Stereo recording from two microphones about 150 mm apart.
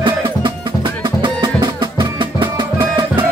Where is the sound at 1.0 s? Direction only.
30° right (ahead or behind).